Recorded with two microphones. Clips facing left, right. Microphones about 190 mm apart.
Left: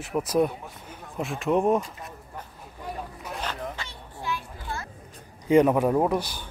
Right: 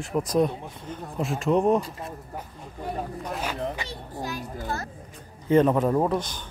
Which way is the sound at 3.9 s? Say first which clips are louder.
Right 1 dB; 40° right (ahead or behind).